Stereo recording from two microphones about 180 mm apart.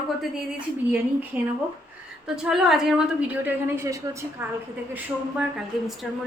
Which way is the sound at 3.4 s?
15° right (ahead or behind).